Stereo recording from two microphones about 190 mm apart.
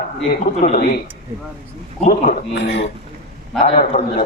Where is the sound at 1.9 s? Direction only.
40° left (ahead or behind).